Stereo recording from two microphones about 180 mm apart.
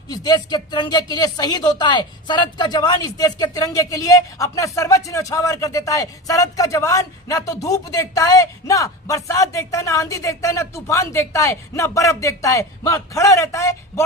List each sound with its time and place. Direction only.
0.1 s speech: 20° left (ahead or behind)